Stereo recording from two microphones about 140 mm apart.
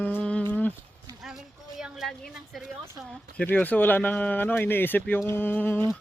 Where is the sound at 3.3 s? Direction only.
10° left (ahead or behind).